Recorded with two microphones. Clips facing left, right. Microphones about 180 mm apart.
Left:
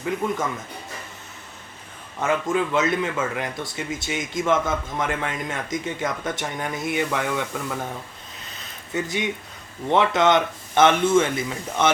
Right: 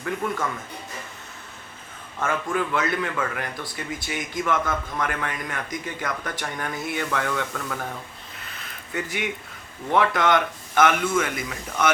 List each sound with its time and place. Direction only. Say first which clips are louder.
2.2 s a man's voice: left 3 dB; 20° left (ahead or behind)
8.9 s a man's voice: left 3 dB; 20° left (ahead or behind)